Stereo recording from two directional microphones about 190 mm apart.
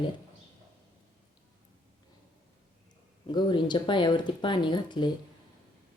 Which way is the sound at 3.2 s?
25° left (ahead or behind).